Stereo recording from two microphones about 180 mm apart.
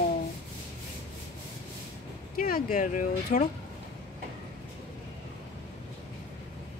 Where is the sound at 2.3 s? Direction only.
55° left (ahead or behind).